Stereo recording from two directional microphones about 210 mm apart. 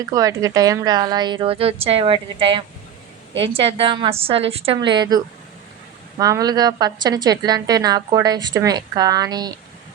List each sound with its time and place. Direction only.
0.0 s a woman's voice: 15° right (ahead or behind)